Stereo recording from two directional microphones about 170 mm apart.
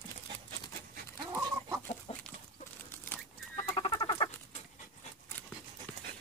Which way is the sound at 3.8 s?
30° left (ahead or behind).